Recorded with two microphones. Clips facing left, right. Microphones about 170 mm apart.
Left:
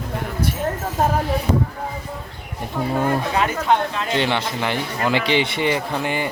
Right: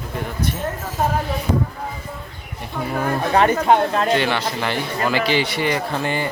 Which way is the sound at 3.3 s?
45° right (ahead or behind).